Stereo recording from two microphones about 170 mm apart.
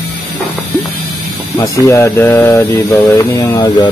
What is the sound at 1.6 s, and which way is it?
Mantra, 20° left (ahead or behind).